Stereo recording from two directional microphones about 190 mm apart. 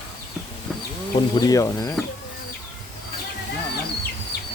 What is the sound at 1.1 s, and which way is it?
Speech, 20° left (ahead or behind).